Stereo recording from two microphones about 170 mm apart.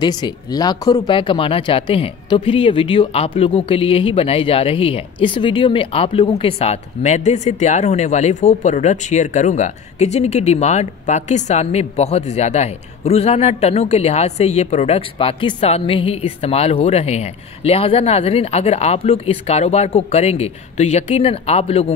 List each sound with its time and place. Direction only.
0.0 s speech: 25° left (ahead or behind)